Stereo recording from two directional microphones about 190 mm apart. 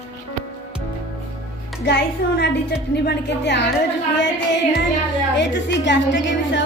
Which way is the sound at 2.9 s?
60° left (ahead or behind).